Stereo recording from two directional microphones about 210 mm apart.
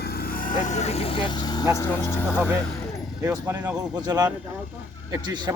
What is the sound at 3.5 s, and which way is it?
A man's voice, 20° right (ahead or behind).